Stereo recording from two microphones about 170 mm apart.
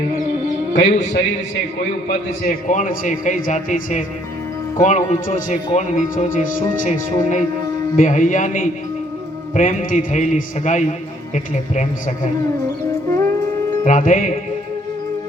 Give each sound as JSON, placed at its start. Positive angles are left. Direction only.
{"t": 0.7, "sound": "speech", "side_deg": 45}
{"t": 2.6, "sound": "speech", "side_deg": 50}
{"t": 13.8, "sound": "speech", "side_deg": 50}